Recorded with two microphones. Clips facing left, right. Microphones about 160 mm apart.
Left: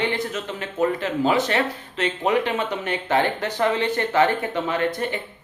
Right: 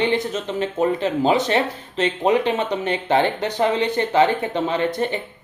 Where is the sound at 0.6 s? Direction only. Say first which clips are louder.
Right 3 dB; 25° right (ahead or behind).